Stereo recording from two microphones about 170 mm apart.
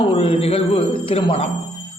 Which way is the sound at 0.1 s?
35° left (ahead or behind).